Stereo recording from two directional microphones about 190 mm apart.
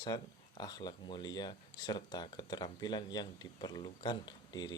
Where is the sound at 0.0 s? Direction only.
20° left (ahead or behind).